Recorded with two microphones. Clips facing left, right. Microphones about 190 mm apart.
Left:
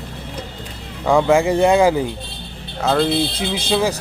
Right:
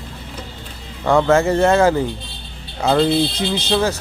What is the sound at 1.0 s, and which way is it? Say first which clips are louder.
A man's voice: even; 10° left (ahead or behind).